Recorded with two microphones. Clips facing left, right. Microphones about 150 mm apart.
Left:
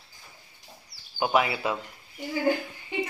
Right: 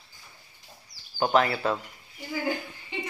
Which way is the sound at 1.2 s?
10° left (ahead or behind).